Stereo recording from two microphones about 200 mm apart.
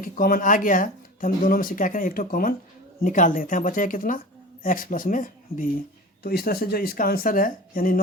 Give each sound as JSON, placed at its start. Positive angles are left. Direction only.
{"t": 0.0, "sound": "speech", "side_deg": 45}